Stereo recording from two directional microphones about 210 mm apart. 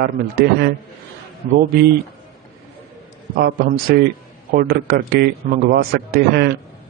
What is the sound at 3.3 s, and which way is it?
A man's voice, 45° right (ahead or behind).